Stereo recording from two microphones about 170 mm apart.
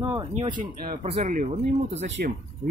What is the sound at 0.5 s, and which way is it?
Speech, 60° right (ahead or behind).